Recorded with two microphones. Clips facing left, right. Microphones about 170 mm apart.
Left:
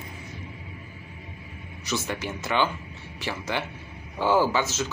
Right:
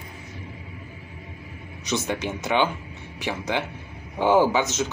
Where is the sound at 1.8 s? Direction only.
20° right (ahead or behind).